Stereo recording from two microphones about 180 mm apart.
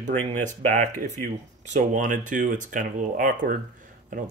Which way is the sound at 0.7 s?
45° right (ahead or behind).